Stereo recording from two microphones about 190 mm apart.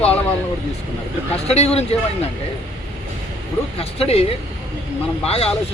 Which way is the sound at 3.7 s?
30° left (ahead or behind).